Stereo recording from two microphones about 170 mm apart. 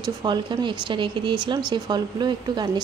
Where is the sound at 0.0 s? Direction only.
25° right (ahead or behind).